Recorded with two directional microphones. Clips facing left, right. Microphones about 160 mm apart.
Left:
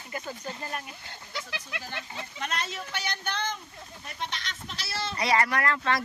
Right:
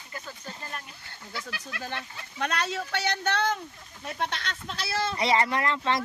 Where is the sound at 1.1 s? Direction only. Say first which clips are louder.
Right 1 dB; 25° left (ahead or behind).